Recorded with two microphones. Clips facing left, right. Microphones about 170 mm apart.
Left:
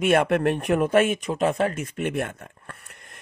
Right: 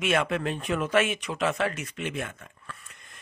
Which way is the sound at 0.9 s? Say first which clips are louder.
Left 5 dB; 50° left (ahead or behind).